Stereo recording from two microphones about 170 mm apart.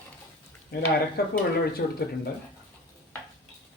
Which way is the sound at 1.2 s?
65° left (ahead or behind).